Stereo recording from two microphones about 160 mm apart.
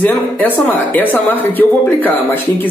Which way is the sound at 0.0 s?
10° left (ahead or behind).